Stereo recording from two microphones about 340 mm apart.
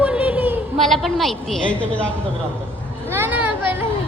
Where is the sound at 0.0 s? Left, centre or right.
Centre.